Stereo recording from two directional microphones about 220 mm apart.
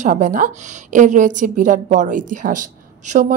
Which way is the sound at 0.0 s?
35° right (ahead or behind).